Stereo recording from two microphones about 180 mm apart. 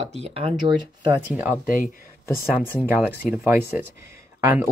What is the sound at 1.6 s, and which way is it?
Speech, 50° left (ahead or behind).